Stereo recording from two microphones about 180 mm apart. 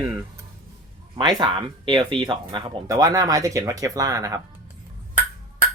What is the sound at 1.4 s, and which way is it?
Speech, 25° right (ahead or behind).